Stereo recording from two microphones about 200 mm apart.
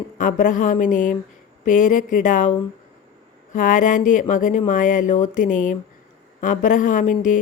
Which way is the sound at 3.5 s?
40° left (ahead or behind).